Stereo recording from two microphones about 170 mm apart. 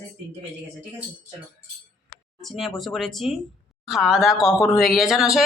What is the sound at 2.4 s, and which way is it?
Speech, centre (ahead or behind).